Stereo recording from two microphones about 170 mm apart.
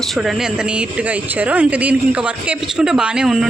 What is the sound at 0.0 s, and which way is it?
Speech, centre (ahead or behind).